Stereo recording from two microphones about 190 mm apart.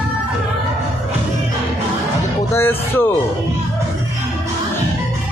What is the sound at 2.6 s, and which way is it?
Speech, 10° left (ahead or behind).